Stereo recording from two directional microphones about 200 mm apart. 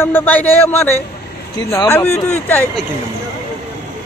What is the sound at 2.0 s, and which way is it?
Speech, 35° left (ahead or behind).